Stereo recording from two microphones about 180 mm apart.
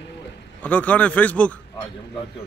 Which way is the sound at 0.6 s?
10° left (ahead or behind).